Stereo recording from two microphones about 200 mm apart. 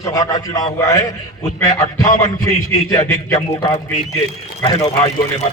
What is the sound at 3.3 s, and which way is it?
Speech, 25° left (ahead or behind).